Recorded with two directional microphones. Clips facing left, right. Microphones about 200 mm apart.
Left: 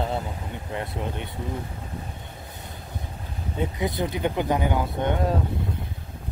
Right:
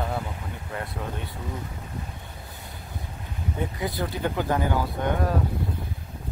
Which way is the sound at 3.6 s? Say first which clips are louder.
Left 3 dB; 20° left (ahead or behind).